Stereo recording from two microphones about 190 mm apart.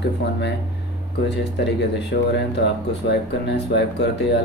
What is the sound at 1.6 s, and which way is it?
Speech, 65° left (ahead or behind).